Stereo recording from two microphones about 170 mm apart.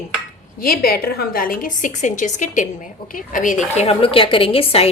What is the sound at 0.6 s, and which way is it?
A woman's voice, 65° left (ahead or behind).